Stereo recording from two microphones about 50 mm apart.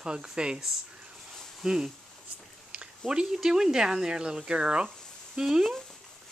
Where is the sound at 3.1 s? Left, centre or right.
Centre.